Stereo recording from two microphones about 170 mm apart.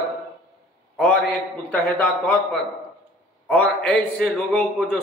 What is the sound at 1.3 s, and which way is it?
A man's voice, 5° left (ahead or behind).